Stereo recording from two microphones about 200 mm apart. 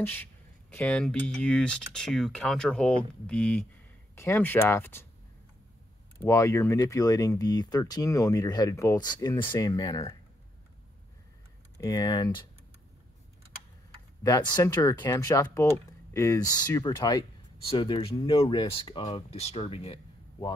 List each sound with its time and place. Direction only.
0.0 s speech: 10° left (ahead or behind)
6.1 s speech: 15° left (ahead or behind)
11.8 s speech: 20° left (ahead or behind)
14.2 s speech: 15° left (ahead or behind)